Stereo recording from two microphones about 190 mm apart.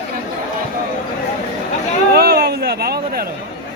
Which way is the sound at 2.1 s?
50° right (ahead or behind).